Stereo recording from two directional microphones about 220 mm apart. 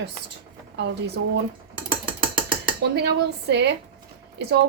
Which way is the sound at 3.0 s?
50° right (ahead or behind).